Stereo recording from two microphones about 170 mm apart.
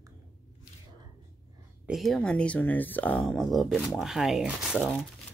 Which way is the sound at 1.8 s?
Centre (ahead or behind).